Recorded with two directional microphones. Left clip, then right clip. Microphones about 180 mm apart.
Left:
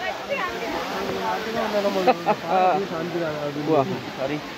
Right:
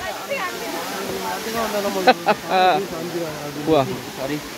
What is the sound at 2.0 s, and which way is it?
Speech, 30° right (ahead or behind).